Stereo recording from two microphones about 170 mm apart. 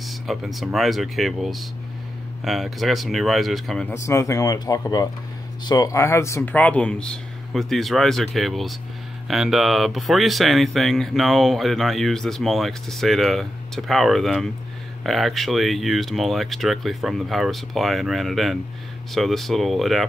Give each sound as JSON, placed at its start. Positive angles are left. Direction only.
{"t": 0.0, "sound": "speech", "side_deg": 0}
{"t": 3.9, "sound": "speech", "side_deg": 15}